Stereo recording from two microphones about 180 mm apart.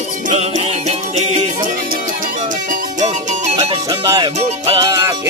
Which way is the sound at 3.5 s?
20° right (ahead or behind).